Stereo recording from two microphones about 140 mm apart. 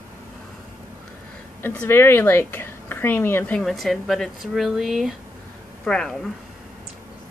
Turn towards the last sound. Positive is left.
turn(degrees=5)  # may be behind; listen again after turning